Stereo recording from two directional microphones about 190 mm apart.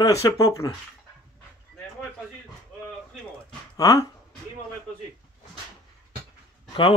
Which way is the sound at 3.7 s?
15° left (ahead or behind).